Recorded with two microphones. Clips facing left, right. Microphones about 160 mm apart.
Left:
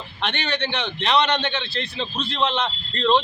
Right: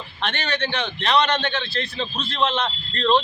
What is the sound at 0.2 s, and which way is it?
A man's voice, 20° left (ahead or behind).